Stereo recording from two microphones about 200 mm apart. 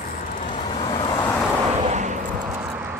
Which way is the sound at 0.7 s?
25° left (ahead or behind).